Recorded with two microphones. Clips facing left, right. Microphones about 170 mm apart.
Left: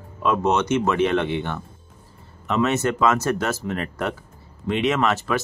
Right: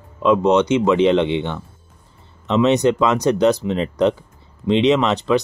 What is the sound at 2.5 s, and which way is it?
Speech, 20° right (ahead or behind).